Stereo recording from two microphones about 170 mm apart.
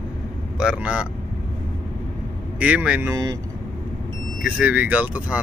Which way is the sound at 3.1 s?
20° right (ahead or behind).